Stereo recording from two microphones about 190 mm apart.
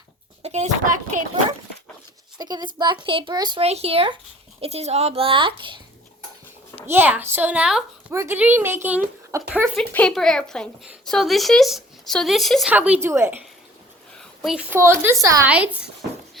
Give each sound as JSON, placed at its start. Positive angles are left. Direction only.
{"t": 0.4, "sound": "a child's voice", "side_deg": -35}
{"t": 2.4, "sound": "a child's voice", "side_deg": -20}
{"t": 6.8, "sound": "a woman's voice", "side_deg": -10}
{"t": 9.7, "sound": "speech", "side_deg": 5}
{"t": 14.2, "sound": "a sound", "side_deg": -5}
{"t": 14.8, "sound": "a woman's voice", "side_deg": -15}